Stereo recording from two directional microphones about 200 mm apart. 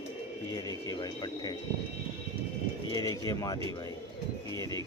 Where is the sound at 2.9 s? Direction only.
20° left (ahead or behind).